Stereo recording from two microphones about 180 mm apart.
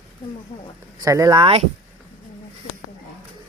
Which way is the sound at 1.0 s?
20° right (ahead or behind).